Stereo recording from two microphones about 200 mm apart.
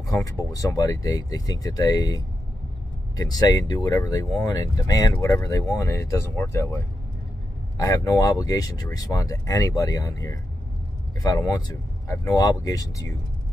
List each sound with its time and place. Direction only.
0.1 s speech: 15° left (ahead or behind)